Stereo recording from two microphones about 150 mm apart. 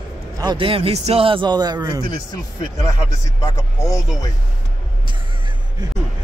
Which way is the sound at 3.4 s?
25° left (ahead or behind).